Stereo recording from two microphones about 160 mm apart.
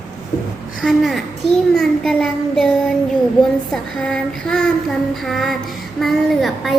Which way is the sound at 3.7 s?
5° left (ahead or behind).